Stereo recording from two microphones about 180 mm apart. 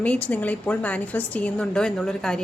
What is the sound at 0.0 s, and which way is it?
A woman's voice, 5° left (ahead or behind).